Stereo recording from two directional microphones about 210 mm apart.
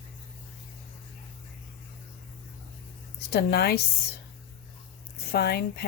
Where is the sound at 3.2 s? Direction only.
50° left (ahead or behind).